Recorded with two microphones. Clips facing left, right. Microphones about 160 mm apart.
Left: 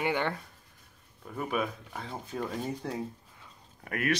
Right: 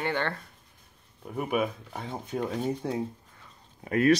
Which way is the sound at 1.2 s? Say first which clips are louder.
Right 4 dB; 15° right (ahead or behind).